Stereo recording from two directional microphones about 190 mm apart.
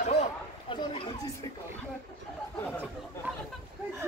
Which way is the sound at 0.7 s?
25° left (ahead or behind).